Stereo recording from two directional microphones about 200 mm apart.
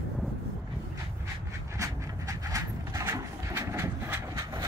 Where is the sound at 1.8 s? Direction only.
15° right (ahead or behind).